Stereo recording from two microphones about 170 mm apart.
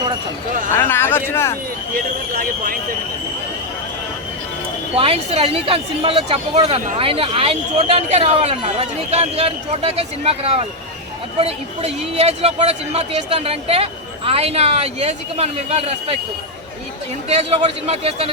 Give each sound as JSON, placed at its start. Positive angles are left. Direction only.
{"t": 0.7, "sound": "speech", "side_deg": 15}
{"t": 2.3, "sound": "speech", "side_deg": -55}
{"t": 4.9, "sound": "speech", "side_deg": -35}
{"t": 17.2, "sound": "speech", "side_deg": -40}